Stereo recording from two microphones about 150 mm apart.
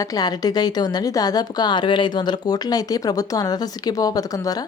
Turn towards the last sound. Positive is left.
turn(degrees=25)  # may be behind; listen again after turning